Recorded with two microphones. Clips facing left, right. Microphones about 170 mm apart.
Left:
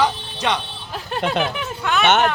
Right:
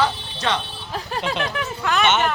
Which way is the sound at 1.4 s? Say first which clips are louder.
Left 1 dB; centre (ahead or behind).